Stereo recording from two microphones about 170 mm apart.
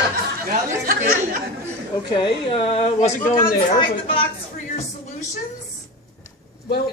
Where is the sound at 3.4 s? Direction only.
25° left (ahead or behind).